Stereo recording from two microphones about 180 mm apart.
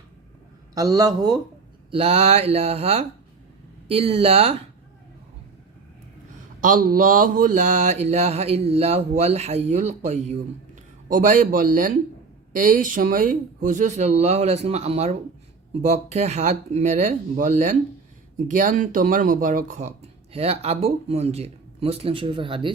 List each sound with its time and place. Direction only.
0.7 s a man's voice: 20° right (ahead or behind)
1.9 s speech: 35° right (ahead or behind)
6.6 s speech: 50° right (ahead or behind); by 22.7 s 30° right (ahead or behind)